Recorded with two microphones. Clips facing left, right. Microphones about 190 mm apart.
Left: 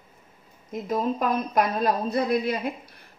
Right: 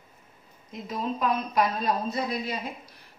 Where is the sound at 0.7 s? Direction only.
50° left (ahead or behind).